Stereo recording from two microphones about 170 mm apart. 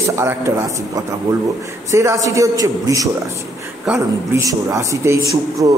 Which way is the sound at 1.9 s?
20° right (ahead or behind).